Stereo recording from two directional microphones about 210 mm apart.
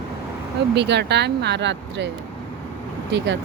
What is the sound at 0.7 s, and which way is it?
Speech, 55° right (ahead or behind).